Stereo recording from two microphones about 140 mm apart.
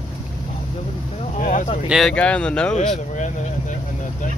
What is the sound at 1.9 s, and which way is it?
Speech, 5° left (ahead or behind).